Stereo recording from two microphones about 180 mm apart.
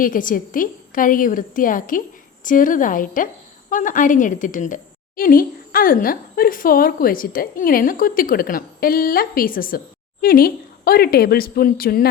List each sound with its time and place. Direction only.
0.0 s a woman's voice: 50° left (ahead or behind)